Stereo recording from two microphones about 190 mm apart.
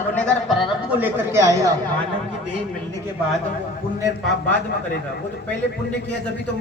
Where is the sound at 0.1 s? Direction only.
5° left (ahead or behind).